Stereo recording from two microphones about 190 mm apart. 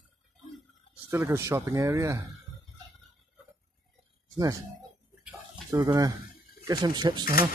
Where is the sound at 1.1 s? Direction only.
15° right (ahead or behind).